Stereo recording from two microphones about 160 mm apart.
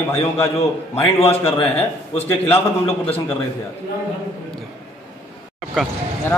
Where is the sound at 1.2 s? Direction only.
40° left (ahead or behind).